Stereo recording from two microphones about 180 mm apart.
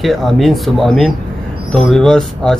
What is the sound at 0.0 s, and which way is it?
Speech, centre (ahead or behind).